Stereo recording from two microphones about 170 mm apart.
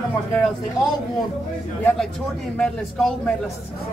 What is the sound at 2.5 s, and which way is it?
Speech, 5° left (ahead or behind).